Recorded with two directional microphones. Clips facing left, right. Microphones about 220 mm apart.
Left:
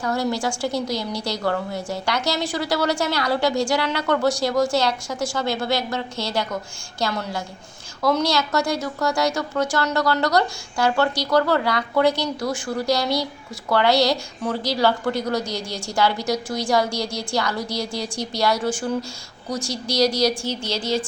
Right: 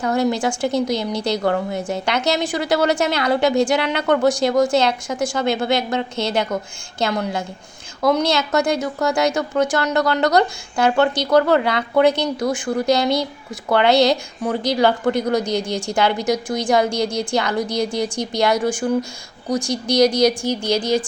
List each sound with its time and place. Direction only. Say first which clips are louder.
0.0 s a woman's voice: right 4 dB; 20° right (ahead or behind)